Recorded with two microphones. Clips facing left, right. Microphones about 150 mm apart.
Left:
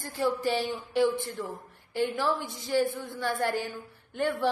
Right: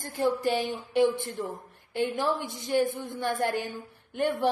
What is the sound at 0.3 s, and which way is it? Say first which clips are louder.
A woman's voice: right 1 dB; 15° right (ahead or behind).